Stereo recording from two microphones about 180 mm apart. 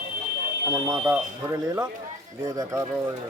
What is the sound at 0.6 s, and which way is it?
Speech, 15° right (ahead or behind).